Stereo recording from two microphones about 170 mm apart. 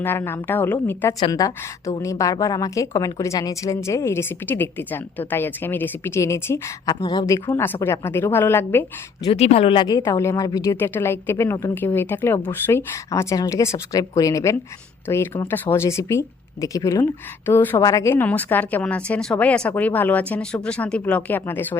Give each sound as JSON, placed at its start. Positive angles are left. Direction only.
{"t": 0.0, "sound": "a woman's voice", "side_deg": 15}
{"t": 9.3, "sound": "speech", "side_deg": 35}
{"t": 10.0, "sound": "a woman's voice", "side_deg": 15}